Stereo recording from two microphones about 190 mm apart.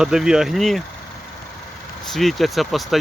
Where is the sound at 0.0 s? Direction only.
5° right (ahead or behind).